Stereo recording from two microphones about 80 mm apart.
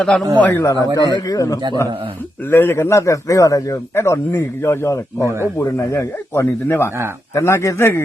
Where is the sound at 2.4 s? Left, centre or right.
Left.